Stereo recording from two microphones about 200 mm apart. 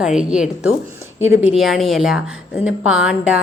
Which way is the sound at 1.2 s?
75° right (ahead or behind).